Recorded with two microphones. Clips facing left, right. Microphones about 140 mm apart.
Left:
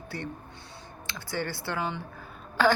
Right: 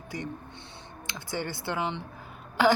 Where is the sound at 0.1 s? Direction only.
15° right (ahead or behind).